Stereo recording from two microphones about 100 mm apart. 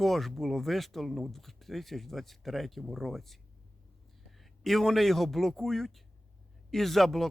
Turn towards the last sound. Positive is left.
turn(degrees=0)  # may be behind; listen again after turning